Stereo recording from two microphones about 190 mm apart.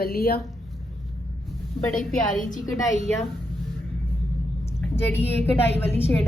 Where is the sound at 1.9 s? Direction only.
Centre (ahead or behind).